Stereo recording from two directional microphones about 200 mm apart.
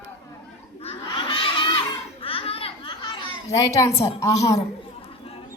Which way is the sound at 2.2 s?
30° left (ahead or behind).